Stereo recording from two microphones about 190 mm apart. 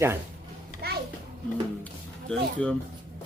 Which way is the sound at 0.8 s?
55° right (ahead or behind).